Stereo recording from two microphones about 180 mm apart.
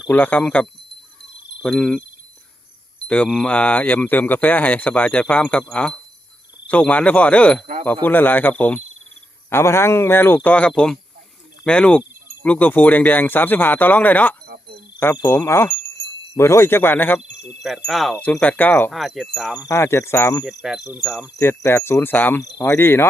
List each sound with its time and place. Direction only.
0.0 s speech: 10° left (ahead or behind)
3.1 s speech: 5° left (ahead or behind)
14.4 s a sound: 60° right (ahead or behind)
14.9 s speech: 10° left (ahead or behind)
16.0 s wind chime: 15° left (ahead or behind)
16.3 s speech: 15° left (ahead or behind)
17.6 s speech: centre (ahead or behind)
19.6 s speech: 15° left (ahead or behind)
20.4 s speech: centre (ahead or behind)
21.3 s speech: 15° left (ahead or behind)